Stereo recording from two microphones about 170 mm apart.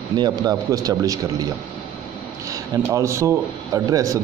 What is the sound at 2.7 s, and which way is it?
A man's voice, 20° right (ahead or behind).